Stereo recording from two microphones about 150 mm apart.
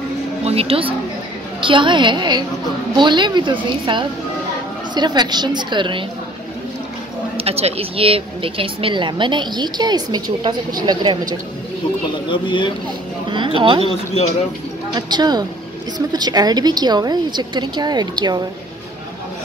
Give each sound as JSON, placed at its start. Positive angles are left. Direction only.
{"t": 0.5, "sound": "a woman's voice", "side_deg": -40}
{"t": 7.3, "sound": "speech", "side_deg": -40}
{"t": 12.3, "sound": "speech", "side_deg": 30}
{"t": 13.6, "sound": "speech", "side_deg": -35}
{"t": 15.0, "sound": "a woman's voice", "side_deg": -30}